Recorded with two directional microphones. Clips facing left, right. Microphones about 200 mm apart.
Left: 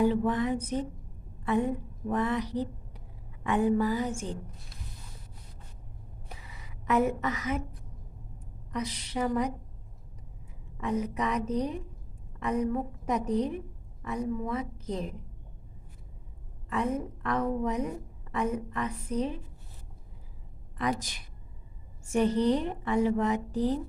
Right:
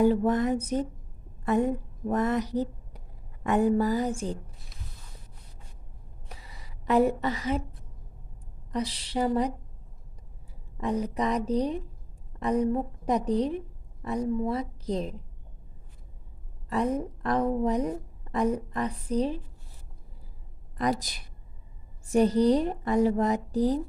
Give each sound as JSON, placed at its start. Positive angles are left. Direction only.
{"t": 0.0, "sound": "a woman's voice", "side_deg": -45}
{"t": 6.5, "sound": "a woman's voice", "side_deg": -35}
{"t": 8.7, "sound": "a woman's voice", "side_deg": -30}
{"t": 10.8, "sound": "a woman's voice", "side_deg": -35}
{"t": 17.6, "sound": "a woman's voice", "side_deg": -35}
{"t": 20.7, "sound": "a woman's voice", "side_deg": -35}